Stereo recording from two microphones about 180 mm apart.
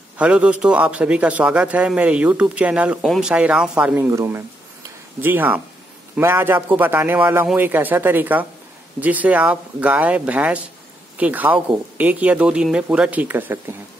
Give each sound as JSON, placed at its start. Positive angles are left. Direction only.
{"t": 0.2, "sound": "speech", "side_deg": -5}